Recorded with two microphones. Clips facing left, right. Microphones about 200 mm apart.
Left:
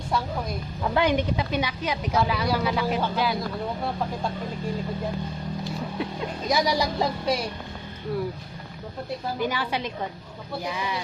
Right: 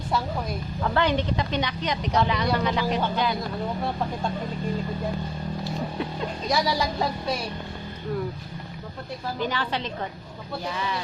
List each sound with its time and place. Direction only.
0.9 s a woman's voice: 10° left (ahead or behind)
6.5 s a woman's voice: 15° left (ahead or behind)
9.4 s a woman's voice: 10° left (ahead or behind)